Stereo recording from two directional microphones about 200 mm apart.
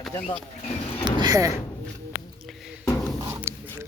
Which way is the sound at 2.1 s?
50° left (ahead or behind).